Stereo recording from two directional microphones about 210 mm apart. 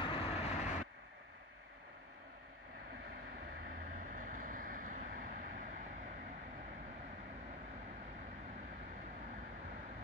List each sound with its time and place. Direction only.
0.0 s vehicle: 30° left (ahead or behind)
3.8 s vehicle: 40° right (ahead or behind)